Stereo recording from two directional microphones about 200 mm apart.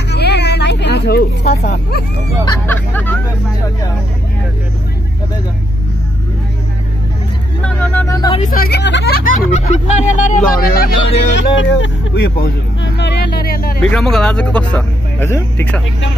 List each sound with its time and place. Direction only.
0.1 s a sound: 55° left (ahead or behind)
1.7 s speech: 55° left (ahead or behind)
2.6 s speech: 10° left (ahead or behind)
7.6 s speech: 5° left (ahead or behind)
8.4 s speech: 45° left (ahead or behind)
11.3 s speech: 65° left (ahead or behind); by 13.7 s 50° left (ahead or behind)
13.8 s speech: 5° left (ahead or behind)